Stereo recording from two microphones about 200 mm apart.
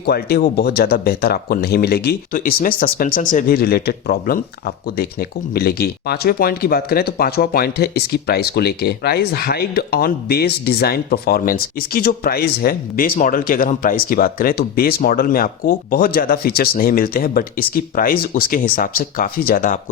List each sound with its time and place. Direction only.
0.0 s speech: 50° left (ahead or behind)